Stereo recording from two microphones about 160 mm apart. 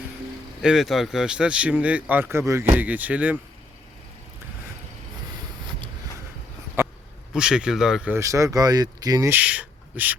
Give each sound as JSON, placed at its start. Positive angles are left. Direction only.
{"t": 0.6, "sound": "speech", "side_deg": -5}
{"t": 6.8, "sound": "a sound", "side_deg": -15}
{"t": 7.3, "sound": "speech", "side_deg": -5}
{"t": 8.1, "sound": "speech", "side_deg": -20}
{"t": 9.3, "sound": "speech", "side_deg": -10}